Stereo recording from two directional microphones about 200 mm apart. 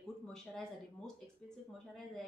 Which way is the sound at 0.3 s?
5° left (ahead or behind).